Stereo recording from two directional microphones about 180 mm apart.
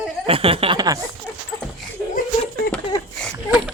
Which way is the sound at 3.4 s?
10° right (ahead or behind).